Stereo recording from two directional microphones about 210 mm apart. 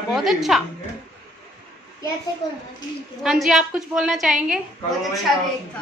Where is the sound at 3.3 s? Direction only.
Centre (ahead or behind).